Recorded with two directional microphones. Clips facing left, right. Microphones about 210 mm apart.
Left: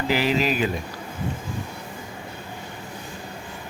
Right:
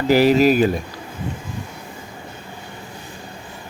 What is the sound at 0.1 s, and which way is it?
Speech, 45° right (ahead or behind).